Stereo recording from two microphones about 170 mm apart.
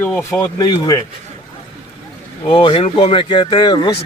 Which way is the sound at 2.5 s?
30° left (ahead or behind).